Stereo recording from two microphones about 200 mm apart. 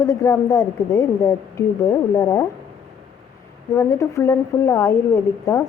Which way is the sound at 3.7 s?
15° left (ahead or behind).